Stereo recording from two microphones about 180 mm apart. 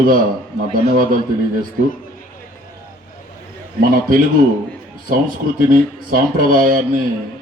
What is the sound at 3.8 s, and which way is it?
Speech, 50° right (ahead or behind).